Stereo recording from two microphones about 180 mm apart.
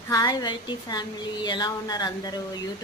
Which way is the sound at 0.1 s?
20° left (ahead or behind).